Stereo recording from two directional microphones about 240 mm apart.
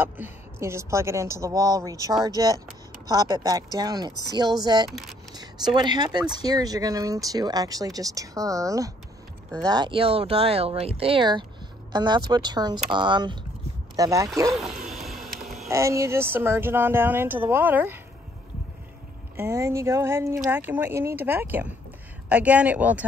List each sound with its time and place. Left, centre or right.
0.0 s speech: centre
4.8 s speech: centre
5.3 s speech: centre
14.9 s vehicle: centre
15.7 s speech: centre
19.3 s speech: centre